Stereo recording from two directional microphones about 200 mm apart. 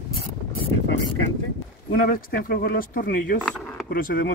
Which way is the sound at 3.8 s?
45° left (ahead or behind).